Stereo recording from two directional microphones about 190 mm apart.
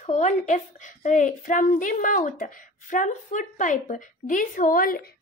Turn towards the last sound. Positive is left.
turn(degrees=50)  # may be behind; listen again after turning